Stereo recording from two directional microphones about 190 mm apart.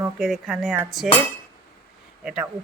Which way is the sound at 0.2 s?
Centre (ahead or behind).